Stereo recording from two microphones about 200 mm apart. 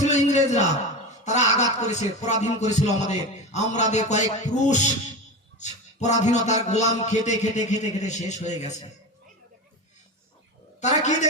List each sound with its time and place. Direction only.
0.0 s a sound: 35° left (ahead or behind)
1.2 s speech: 35° left (ahead or behind)
10.8 s a woman's voice: 35° left (ahead or behind)